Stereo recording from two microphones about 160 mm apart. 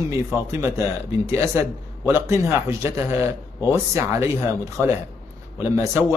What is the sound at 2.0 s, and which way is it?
Speech, 15° right (ahead or behind).